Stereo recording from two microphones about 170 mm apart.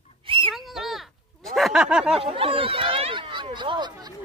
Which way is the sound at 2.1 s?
35° right (ahead or behind).